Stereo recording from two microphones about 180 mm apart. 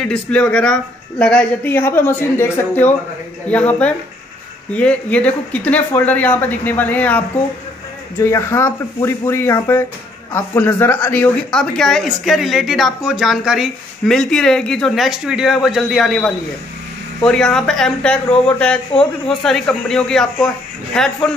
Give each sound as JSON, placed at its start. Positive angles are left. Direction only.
{"t": 0.0, "sound": "speech", "side_deg": 5}